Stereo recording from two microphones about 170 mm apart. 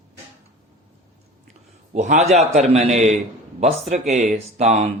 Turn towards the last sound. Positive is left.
turn(degrees=-40)  # may be behind; listen again after turning